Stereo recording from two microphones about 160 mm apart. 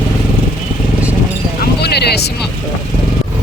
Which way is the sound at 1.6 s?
90° left.